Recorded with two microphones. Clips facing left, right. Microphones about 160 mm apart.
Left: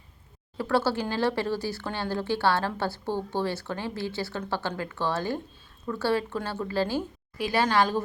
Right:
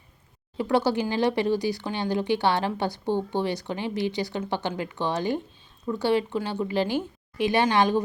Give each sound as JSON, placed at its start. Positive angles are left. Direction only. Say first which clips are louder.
{"t": 0.5, "sound": "a woman's voice", "louder": "right 2 dB", "side_deg": -15}